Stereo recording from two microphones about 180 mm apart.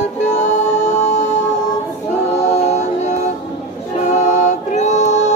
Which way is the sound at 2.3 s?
40° left (ahead or behind).